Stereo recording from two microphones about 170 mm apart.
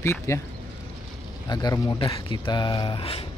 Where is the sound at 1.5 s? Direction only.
25° left (ahead or behind).